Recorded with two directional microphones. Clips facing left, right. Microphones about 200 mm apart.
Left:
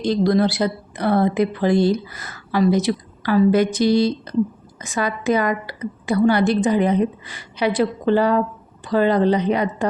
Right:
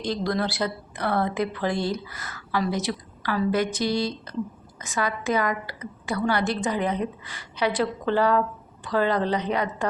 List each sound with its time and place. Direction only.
0.0 s a woman's voice: 15° left (ahead or behind)